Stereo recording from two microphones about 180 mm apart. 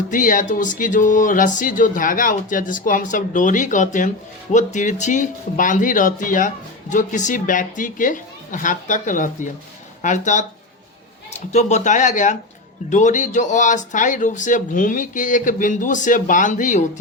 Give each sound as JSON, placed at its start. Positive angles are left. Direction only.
{"t": 0.1, "sound": "speech", "side_deg": 50}